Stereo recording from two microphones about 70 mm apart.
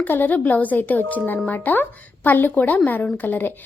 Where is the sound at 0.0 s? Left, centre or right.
Left.